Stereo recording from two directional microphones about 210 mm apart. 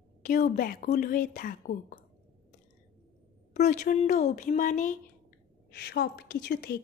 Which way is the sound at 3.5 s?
35° left (ahead or behind).